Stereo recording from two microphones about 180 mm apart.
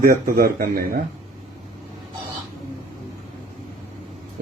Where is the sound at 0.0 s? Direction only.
55° right (ahead or behind).